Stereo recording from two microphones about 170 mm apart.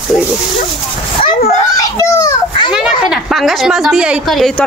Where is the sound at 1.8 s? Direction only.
20° left (ahead or behind).